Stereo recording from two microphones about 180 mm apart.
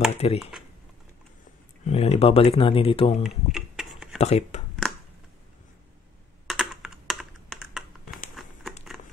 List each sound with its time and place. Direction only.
0.1 s speech: 35° left (ahead or behind)
1.9 s speech: 35° left (ahead or behind)
3.3 s tick-tock: 5° right (ahead or behind)
4.2 s speech: 40° left (ahead or behind)
6.4 s computer keyboard: 5° right (ahead or behind)
7.7 s a sound: centre (ahead or behind)